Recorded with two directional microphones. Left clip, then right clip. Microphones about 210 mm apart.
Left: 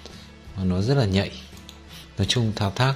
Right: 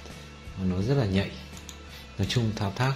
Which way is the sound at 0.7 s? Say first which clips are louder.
Left 4 dB; 35° left (ahead or behind).